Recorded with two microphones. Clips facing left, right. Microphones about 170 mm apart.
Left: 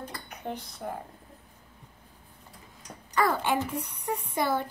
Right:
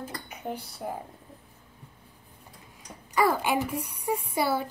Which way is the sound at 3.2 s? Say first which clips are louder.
Right 2 dB; 10° right (ahead or behind).